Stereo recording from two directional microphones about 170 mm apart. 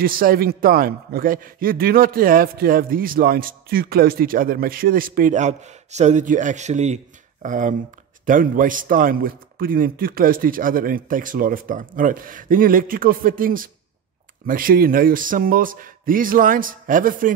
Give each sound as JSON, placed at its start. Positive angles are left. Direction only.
{"t": 0.0, "sound": "a man's voice", "side_deg": -60}